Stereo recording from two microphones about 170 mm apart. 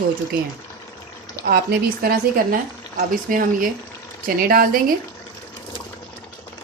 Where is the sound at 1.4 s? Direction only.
60° right (ahead or behind).